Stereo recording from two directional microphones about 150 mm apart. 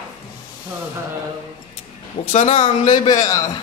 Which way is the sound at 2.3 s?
50° left (ahead or behind).